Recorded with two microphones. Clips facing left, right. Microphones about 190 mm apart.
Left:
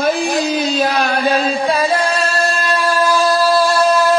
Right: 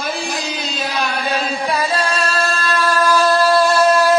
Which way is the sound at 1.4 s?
35° left (ahead or behind).